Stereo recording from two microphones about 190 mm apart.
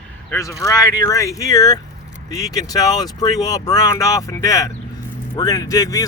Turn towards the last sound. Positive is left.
turn(degrees=15)  # may be behind; listen again after turning